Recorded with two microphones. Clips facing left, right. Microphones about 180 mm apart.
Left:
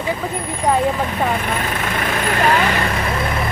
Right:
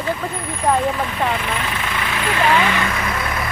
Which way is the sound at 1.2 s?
45° left (ahead or behind).